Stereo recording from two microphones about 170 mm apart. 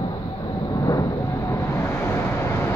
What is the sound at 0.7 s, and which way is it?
Vehicle, 20° left (ahead or behind).